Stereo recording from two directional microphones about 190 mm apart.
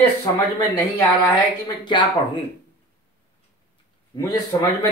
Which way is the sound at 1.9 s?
25° left (ahead or behind).